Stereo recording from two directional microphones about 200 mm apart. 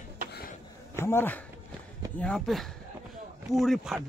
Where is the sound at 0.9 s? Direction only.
10° left (ahead or behind).